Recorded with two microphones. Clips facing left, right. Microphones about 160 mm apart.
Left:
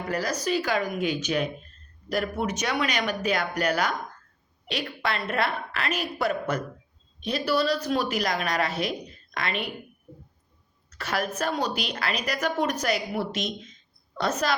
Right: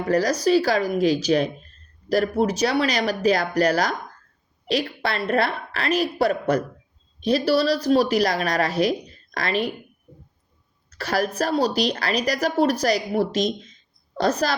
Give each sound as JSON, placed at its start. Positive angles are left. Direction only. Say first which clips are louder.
{"t": 0.1, "sound": "a woman's voice", "louder": "right 9 dB", "side_deg": -35}
{"t": 10.8, "sound": "a woman's voice", "louder": "right 5 dB", "side_deg": -35}